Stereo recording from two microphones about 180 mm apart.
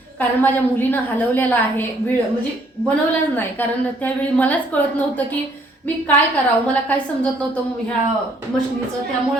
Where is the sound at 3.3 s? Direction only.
10° left (ahead or behind).